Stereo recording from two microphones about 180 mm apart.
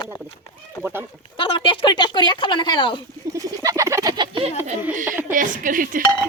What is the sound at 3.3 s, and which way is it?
Bird, 20° right (ahead or behind).